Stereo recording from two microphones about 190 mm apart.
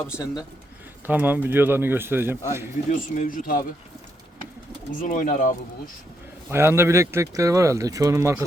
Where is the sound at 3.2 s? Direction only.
45° left (ahead or behind).